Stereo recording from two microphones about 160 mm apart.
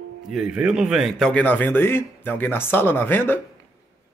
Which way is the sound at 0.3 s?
5° right (ahead or behind).